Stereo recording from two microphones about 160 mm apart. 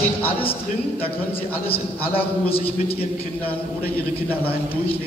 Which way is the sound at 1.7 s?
35° left (ahead or behind).